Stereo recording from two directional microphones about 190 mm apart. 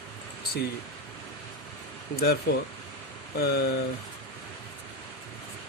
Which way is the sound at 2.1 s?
55° left (ahead or behind).